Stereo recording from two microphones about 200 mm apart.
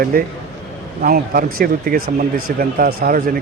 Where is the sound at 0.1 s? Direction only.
50° right (ahead or behind).